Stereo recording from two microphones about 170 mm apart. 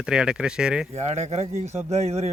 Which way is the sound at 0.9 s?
40° right (ahead or behind).